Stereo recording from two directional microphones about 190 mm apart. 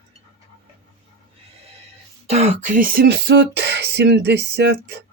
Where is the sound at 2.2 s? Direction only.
35° right (ahead or behind); by 5.0 s 60° right (ahead or behind).